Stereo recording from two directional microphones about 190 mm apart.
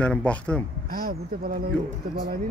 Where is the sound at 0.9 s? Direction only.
50° right (ahead or behind).